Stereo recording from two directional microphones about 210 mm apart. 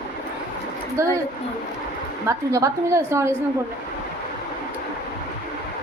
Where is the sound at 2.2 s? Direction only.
15° right (ahead or behind).